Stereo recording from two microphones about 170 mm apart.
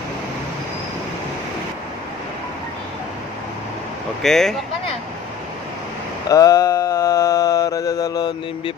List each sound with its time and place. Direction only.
4.2 s speech: centre (ahead or behind)
6.2 s mantra: 20° left (ahead or behind)